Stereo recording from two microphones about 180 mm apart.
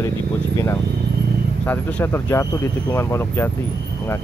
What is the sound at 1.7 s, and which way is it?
Speech, 10° left (ahead or behind).